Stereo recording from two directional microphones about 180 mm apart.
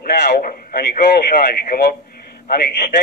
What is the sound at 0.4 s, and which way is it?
Speech, 45° left (ahead or behind).